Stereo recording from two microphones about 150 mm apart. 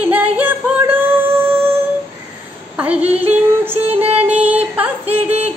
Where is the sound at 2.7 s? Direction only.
10° right (ahead or behind).